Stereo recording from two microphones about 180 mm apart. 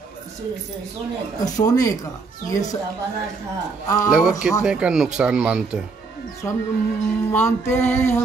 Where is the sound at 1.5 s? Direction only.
20° left (ahead or behind).